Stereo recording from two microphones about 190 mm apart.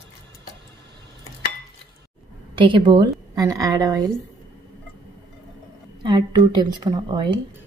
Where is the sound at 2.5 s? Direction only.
25° right (ahead or behind).